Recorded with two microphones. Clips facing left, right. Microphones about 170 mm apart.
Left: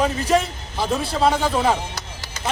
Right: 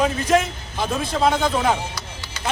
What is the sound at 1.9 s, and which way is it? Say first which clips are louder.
Chop: even; 45° left (ahead or behind).